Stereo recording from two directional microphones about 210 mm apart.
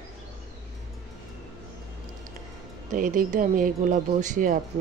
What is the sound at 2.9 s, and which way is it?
A woman's voice, 40° right (ahead or behind).